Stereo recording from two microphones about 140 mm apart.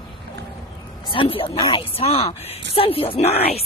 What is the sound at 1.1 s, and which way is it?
A woman's voice, 40° left (ahead or behind).